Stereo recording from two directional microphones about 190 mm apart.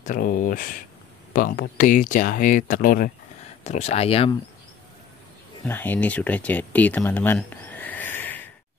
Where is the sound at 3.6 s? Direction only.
35° left (ahead or behind).